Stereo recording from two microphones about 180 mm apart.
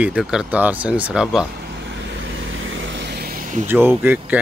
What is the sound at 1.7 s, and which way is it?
Vehicle, 85° right.